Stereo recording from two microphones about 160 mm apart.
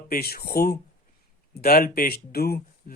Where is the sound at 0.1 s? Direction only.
70° left (ahead or behind).